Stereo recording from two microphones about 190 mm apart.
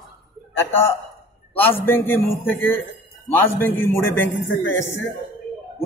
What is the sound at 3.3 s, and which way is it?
A man's voice, 10° left (ahead or behind).